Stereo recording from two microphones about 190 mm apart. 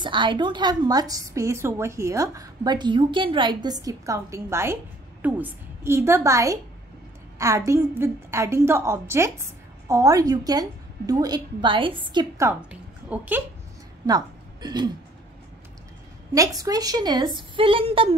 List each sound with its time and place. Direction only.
0.0 s a woman's voice: 25° right (ahead or behind)
13.1 s a woman's voice: 10° right (ahead or behind)
14.0 s a woman's voice: 20° right (ahead or behind)
16.3 s a woman's voice: 20° right (ahead or behind)